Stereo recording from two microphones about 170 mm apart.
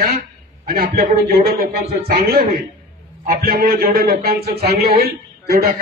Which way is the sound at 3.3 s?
55° right (ahead or behind).